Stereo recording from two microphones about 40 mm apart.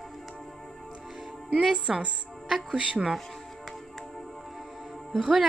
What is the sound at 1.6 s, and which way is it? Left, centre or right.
Speech, right.